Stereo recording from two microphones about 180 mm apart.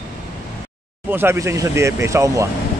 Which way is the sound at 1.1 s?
15° right (ahead or behind).